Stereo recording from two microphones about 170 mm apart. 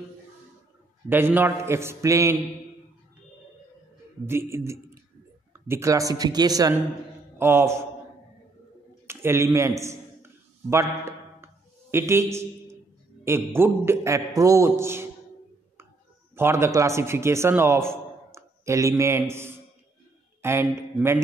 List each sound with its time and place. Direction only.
1.0 s a man's voice: 10° right (ahead or behind)
4.3 s a man's voice: 15° right (ahead or behind)
9.0 s a sound: 15° right (ahead or behind)
13.2 s a man's voice: 15° right (ahead or behind)
16.3 s a man's voice: 15° right (ahead or behind)